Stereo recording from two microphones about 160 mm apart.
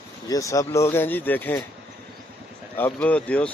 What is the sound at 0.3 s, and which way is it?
Speech, 20° left (ahead or behind).